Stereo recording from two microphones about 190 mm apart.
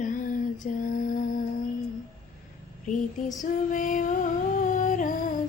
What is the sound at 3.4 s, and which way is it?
Female singing, 45° left (ahead or behind).